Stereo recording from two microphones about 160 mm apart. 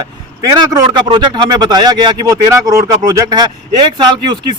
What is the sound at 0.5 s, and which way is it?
Speech, 25° right (ahead or behind).